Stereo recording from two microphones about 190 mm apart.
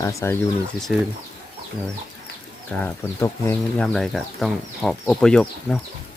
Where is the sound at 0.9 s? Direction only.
5° right (ahead or behind).